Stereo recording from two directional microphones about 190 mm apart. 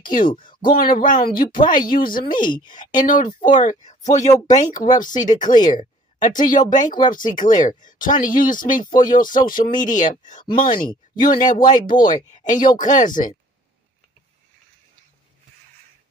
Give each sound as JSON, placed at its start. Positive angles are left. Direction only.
{"t": 0.0, "sound": "speech", "side_deg": 45}